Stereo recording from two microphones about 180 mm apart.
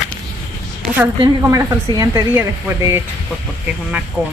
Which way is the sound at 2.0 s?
20° right (ahead or behind).